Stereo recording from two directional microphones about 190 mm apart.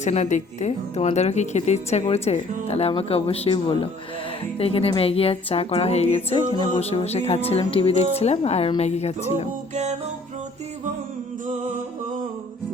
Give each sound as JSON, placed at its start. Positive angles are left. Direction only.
{"t": 0.0, "sound": "a woman's voice", "side_deg": 40}
{"t": 9.7, "sound": "music", "side_deg": -35}